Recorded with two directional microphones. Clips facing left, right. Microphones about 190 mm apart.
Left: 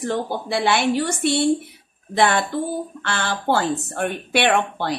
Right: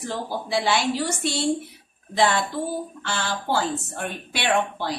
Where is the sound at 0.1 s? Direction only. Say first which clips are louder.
Left 1 dB; 60° left (ahead or behind).